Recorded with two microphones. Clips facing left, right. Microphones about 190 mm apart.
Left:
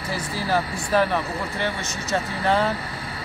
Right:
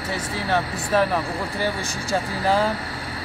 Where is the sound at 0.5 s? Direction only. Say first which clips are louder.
Even; centre (ahead or behind).